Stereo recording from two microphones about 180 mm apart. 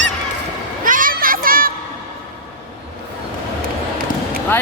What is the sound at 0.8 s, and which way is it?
Children playing, 50° right (ahead or behind).